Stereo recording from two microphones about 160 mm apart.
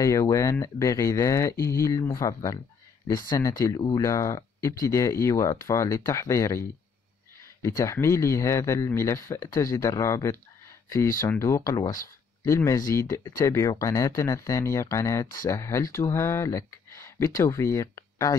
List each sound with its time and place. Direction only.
0.0 s speech: 20° left (ahead or behind)
7.6 s speech: 20° left (ahead or behind)